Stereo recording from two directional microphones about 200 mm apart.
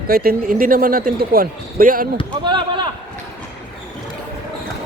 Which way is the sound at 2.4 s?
25° right (ahead or behind).